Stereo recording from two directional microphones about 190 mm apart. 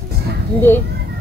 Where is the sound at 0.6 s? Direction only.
10° left (ahead or behind).